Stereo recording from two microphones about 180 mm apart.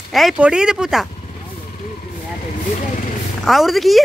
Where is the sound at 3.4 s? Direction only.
Centre (ahead or behind).